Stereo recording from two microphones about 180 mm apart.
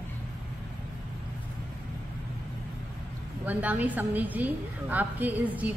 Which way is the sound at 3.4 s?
10° right (ahead or behind).